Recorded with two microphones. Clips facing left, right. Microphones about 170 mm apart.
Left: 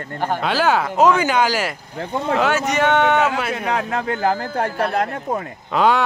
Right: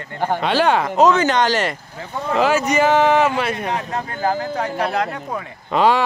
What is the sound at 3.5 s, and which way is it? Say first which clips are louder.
Speech: left 2 dB; 90° left.